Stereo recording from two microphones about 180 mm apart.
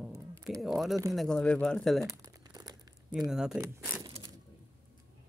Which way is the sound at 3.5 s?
10° right (ahead or behind).